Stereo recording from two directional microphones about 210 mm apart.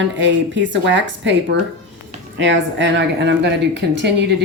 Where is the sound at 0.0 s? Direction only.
60° right (ahead or behind).